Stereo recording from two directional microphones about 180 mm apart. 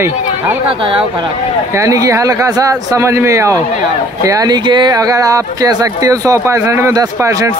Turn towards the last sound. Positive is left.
turn(degrees=-15)  # may be behind; listen again after turning